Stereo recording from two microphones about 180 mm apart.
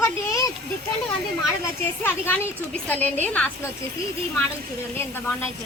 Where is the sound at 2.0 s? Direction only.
10° left (ahead or behind).